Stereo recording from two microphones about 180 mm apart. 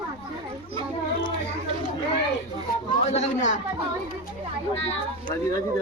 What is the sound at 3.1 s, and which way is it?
Speech, 40° left (ahead or behind).